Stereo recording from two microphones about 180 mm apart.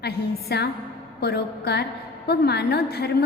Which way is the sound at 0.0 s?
65° left (ahead or behind).